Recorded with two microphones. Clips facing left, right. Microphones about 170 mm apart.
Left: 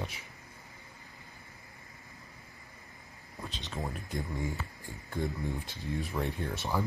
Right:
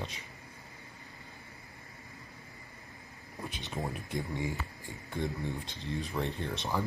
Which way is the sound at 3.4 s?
15° right (ahead or behind).